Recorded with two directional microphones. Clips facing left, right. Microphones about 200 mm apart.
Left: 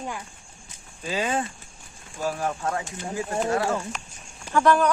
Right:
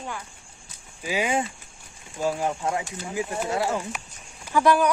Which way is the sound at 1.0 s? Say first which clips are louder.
Right 1 dB; 10° right (ahead or behind).